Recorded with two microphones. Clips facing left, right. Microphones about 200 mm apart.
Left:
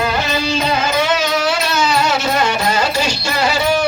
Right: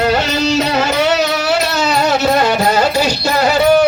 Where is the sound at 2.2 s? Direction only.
35° right (ahead or behind).